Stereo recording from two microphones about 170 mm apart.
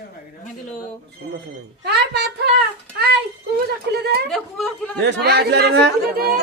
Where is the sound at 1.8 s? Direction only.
85° right.